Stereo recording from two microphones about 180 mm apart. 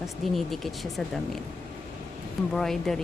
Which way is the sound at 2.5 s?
Centre (ahead or behind).